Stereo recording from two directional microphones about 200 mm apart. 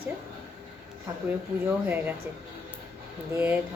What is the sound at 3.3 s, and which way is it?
Speech, 10° right (ahead or behind).